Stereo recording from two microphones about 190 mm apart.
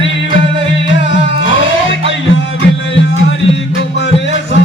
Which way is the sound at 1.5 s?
80° left.